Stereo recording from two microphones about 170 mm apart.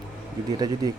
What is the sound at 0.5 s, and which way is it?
Speech, 25° right (ahead or behind).